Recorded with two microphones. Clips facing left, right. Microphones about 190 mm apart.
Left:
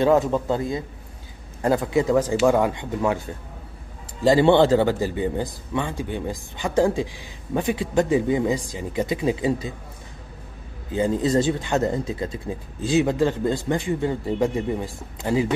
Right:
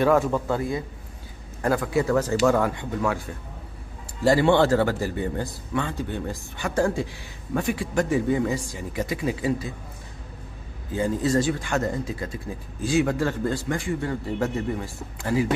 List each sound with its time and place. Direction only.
0.0 s a man's voice: 20° left (ahead or behind)
10.9 s speech: 20° left (ahead or behind)